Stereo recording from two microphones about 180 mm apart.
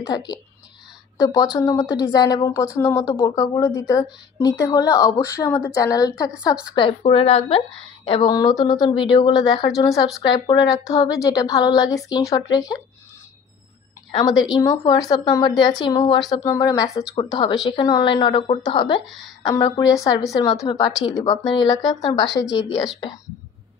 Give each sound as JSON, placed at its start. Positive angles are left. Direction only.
{"t": 0.1, "sound": "speech", "side_deg": 20}
{"t": 14.5, "sound": "speech", "side_deg": 20}
{"t": 19.0, "sound": "a woman's voice", "side_deg": 0}
{"t": 19.4, "sound": "speech", "side_deg": 20}